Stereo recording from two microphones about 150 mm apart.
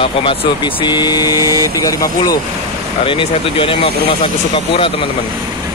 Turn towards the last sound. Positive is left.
turn(degrees=35)  # may be behind; listen again after turning